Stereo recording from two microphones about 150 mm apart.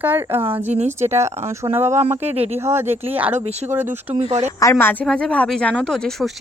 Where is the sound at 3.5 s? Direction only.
45° right (ahead or behind).